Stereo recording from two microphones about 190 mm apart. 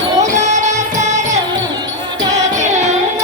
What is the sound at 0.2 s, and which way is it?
Music, 40° right (ahead or behind).